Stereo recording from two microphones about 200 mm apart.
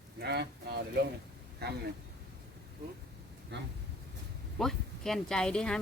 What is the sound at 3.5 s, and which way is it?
Speech, 60° right (ahead or behind).